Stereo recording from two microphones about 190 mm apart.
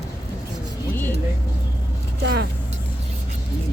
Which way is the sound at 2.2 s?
60° right (ahead or behind).